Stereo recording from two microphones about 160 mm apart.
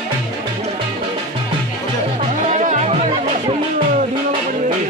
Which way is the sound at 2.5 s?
45° right (ahead or behind).